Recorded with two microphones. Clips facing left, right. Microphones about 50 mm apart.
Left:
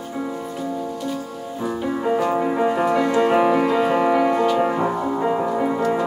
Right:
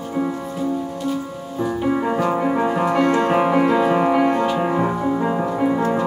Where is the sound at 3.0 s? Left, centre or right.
Right.